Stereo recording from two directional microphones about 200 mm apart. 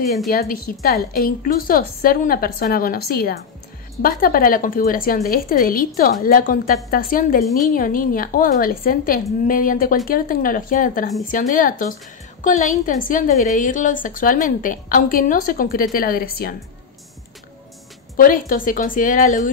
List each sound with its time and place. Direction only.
0.3 s a woman's voice: 45° left (ahead or behind)
18.1 s a woman's voice: 45° left (ahead or behind)